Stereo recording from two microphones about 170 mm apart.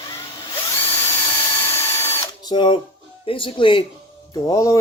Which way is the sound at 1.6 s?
15° left (ahead or behind).